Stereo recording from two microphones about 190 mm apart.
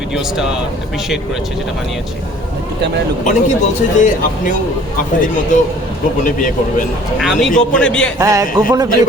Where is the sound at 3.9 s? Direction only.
40° left (ahead or behind).